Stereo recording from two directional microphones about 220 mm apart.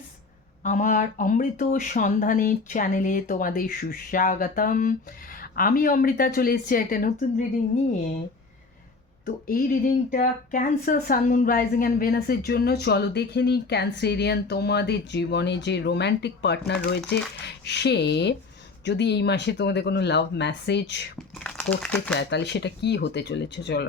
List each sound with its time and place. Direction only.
0.6 s speech: 35° left (ahead or behind)
9.2 s a woman's voice: 40° left (ahead or behind)
21.3 s speech: 5° left (ahead or behind)
22.2 s a woman's voice: 50° left (ahead or behind)